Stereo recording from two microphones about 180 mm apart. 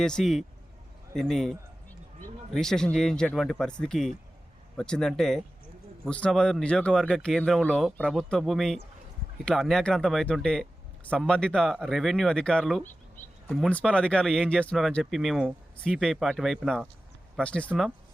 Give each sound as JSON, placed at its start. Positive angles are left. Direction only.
{"t": 0.0, "sound": "speech", "side_deg": 5}
{"t": 1.1, "sound": "a sound", "side_deg": 0}
{"t": 2.5, "sound": "speech", "side_deg": 5}